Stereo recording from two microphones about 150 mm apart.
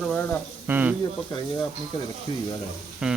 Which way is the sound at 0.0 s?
10° left (ahead or behind).